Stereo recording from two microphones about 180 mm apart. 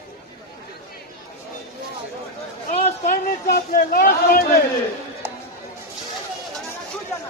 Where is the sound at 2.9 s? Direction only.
45° left (ahead or behind).